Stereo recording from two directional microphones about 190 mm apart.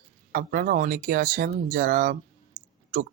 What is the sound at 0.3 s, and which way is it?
Speech, 50° right (ahead or behind).